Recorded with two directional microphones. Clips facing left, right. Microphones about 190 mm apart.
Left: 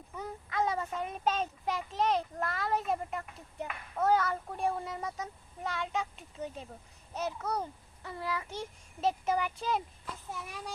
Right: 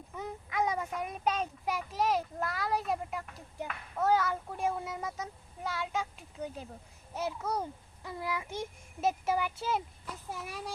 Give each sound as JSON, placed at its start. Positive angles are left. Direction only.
{"t": 0.2, "sound": "child singing", "side_deg": -15}
{"t": 2.0, "sound": "a child's voice", "side_deg": -5}